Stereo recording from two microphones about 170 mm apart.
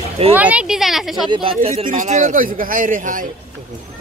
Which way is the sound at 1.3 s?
35° right (ahead or behind).